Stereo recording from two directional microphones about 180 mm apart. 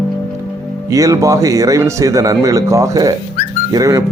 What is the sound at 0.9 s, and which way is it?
A man's voice, 15° right (ahead or behind).